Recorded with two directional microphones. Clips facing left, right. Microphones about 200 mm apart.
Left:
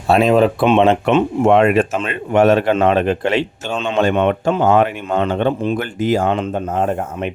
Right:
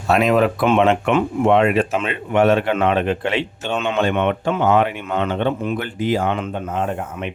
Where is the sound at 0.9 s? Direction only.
35° left (ahead or behind).